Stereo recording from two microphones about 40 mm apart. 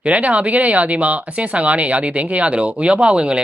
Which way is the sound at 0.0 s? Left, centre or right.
Right.